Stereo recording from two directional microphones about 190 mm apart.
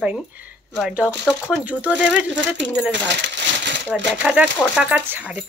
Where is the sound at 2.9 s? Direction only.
70° right (ahead or behind).